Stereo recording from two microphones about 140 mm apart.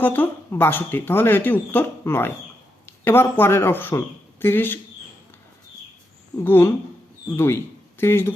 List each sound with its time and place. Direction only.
0.0 s speech: 15° left (ahead or behind)
6.3 s speech: 15° left (ahead or behind)